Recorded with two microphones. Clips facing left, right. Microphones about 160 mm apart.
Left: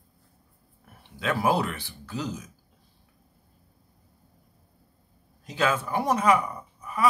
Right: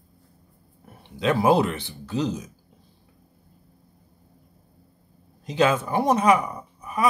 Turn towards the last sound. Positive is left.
turn(degrees=-15)  # may be behind; listen again after turning